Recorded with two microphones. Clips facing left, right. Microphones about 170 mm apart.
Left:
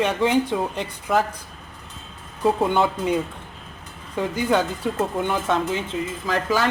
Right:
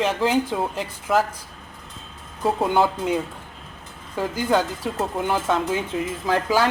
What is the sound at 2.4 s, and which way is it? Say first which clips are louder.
Speech: left 1 dB; centre (ahead or behind).